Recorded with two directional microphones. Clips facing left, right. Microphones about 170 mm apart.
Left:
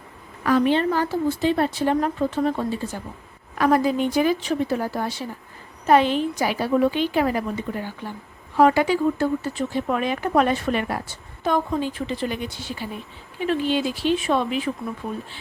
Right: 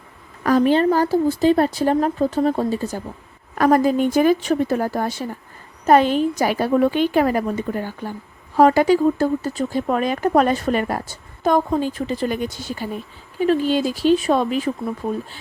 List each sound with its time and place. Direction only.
0.4 s a woman's voice: 40° right (ahead or behind)